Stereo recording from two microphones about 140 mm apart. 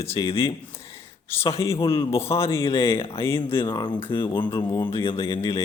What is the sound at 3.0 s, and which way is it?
Speech, 40° left (ahead or behind).